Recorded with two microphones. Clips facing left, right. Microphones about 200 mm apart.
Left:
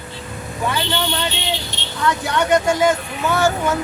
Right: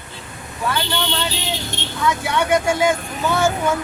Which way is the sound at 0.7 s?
5° left (ahead or behind).